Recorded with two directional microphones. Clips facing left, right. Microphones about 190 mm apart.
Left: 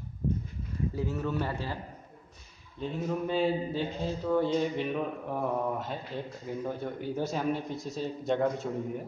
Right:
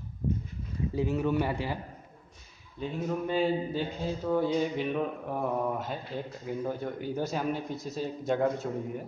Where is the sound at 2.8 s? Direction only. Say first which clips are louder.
Even; centre (ahead or behind).